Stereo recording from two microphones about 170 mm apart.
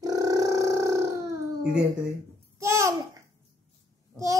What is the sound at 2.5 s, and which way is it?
Babbling, 15° right (ahead or behind).